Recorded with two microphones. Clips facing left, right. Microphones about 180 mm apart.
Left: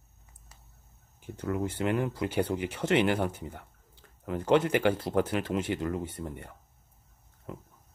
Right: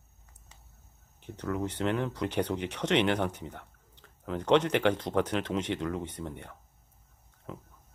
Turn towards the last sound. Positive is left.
turn(degrees=5)  # may be behind; listen again after turning